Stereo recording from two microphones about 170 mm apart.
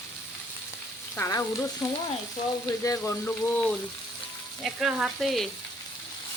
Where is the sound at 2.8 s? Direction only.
20° left (ahead or behind).